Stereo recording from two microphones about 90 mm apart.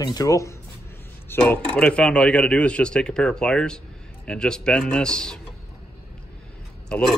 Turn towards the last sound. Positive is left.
turn(degrees=10)  # may be behind; listen again after turning